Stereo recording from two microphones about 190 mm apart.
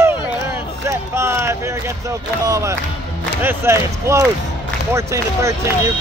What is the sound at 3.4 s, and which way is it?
Basketball bounce, 15° right (ahead or behind).